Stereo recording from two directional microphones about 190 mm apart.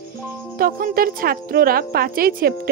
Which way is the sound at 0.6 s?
50° right (ahead or behind).